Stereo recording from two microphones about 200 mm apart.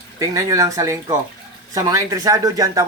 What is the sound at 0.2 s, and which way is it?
Speech, 15° right (ahead or behind).